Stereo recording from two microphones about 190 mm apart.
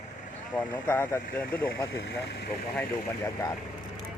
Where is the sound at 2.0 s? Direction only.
65° left (ahead or behind).